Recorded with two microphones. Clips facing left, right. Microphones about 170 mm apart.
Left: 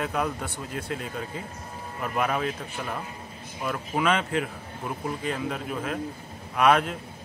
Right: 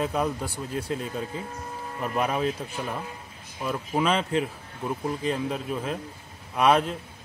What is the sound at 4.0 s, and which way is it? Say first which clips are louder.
Speech: right 1 dB; 30° right (ahead or behind).